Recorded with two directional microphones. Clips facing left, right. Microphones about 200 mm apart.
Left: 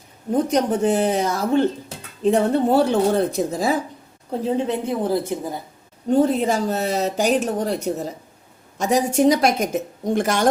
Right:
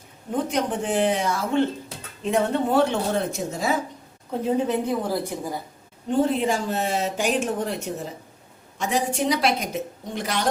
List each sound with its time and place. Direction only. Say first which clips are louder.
0.3 s a woman's voice: left 5 dB; 40° left (ahead or behind)
6.1 s a woman's voice: left 4 dB; 40° left (ahead or behind)